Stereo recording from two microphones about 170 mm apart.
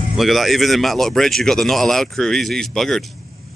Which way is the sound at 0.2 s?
Centre (ahead or behind).